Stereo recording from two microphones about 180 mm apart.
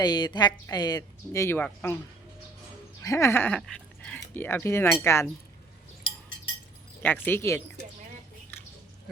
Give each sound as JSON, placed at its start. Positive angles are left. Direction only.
{"t": 0.0, "sound": "speech", "side_deg": 25}
{"t": 3.0, "sound": "speech", "side_deg": 15}
{"t": 7.0, "sound": "speech", "side_deg": 10}